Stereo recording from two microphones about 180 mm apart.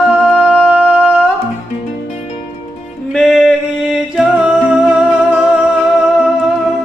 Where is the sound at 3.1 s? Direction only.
Centre (ahead or behind).